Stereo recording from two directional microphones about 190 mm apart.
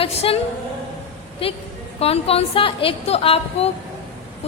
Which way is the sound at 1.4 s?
30° left (ahead or behind).